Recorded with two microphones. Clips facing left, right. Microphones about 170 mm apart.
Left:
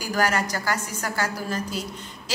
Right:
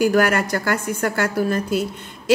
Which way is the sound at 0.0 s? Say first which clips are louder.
Right 7 dB; 60° right (ahead or behind).